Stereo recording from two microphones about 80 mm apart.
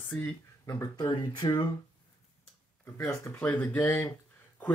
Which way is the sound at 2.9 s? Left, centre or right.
Left.